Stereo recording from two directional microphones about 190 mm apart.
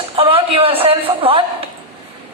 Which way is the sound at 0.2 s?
30° right (ahead or behind).